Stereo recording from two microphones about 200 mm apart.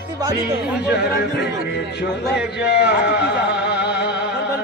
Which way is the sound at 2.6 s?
55° left (ahead or behind).